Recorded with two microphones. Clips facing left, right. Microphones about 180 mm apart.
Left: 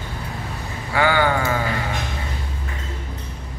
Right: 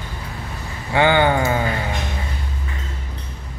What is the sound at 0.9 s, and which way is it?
Speech, 25° right (ahead or behind).